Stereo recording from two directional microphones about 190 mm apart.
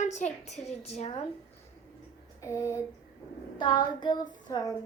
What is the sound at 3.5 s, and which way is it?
Child singing, 25° left (ahead or behind).